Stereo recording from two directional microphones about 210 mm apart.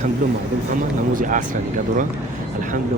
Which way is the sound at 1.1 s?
40° right (ahead or behind).